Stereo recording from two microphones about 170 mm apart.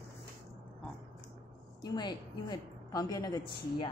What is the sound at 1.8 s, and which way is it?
A woman's voice, 25° left (ahead or behind).